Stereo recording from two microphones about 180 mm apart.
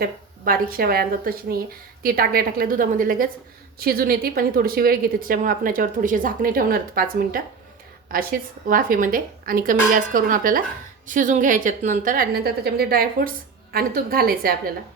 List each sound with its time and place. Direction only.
0.0 s a woman's voice: 55° right (ahead or behind)